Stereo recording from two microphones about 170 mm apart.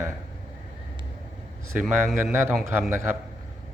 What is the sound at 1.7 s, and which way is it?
Speech, 10° right (ahead or behind).